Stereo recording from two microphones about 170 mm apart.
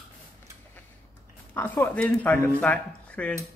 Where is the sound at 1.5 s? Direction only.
10° left (ahead or behind).